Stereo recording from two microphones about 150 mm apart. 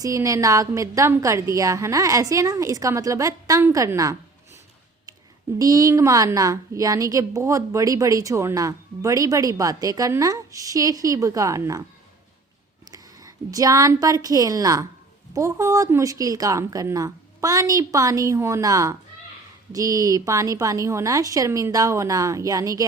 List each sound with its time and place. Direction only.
0.0 s a woman's voice: 20° right (ahead or behind)
5.5 s a woman's voice: 25° right (ahead or behind)
12.9 s a woman's voice: 25° right (ahead or behind)